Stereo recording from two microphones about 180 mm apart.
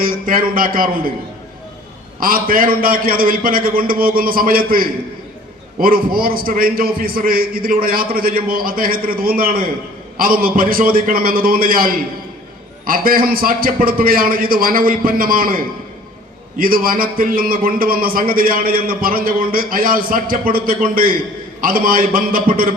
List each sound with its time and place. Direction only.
0.0 s a man's voice: 50° right (ahead or behind)
2.2 s a man's voice: 50° right (ahead or behind)